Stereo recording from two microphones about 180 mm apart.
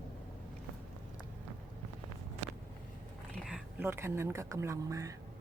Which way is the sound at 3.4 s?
10° right (ahead or behind).